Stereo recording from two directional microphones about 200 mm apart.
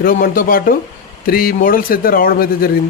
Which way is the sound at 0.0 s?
45° left (ahead or behind).